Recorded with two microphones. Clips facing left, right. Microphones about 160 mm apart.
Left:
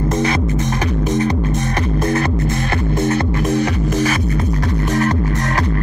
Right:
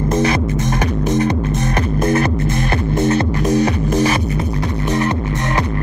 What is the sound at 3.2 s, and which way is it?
Music, 30° right (ahead or behind).